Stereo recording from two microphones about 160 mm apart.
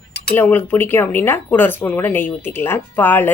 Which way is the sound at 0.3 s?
10° left (ahead or behind).